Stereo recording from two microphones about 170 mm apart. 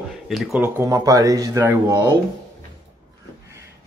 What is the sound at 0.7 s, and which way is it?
Speech, 20° right (ahead or behind).